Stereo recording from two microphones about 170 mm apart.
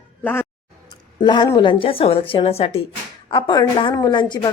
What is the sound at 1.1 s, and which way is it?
A woman's voice, 25° left (ahead or behind).